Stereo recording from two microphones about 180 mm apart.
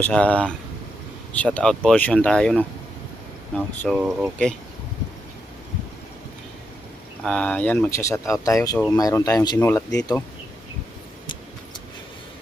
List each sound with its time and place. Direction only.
0.0 s speech: 5° left (ahead or behind)
7.3 s speech: 5° left (ahead or behind)